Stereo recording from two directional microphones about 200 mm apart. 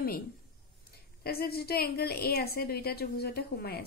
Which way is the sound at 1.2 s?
50° left (ahead or behind).